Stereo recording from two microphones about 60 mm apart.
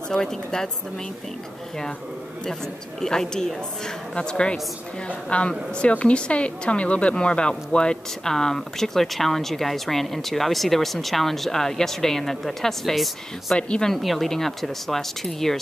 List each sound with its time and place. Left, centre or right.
0.1 s a woman's voice: centre
3.0 s a woman's voice: centre
13.6 s a woman's voice: centre
13.9 s a woman's voice: centre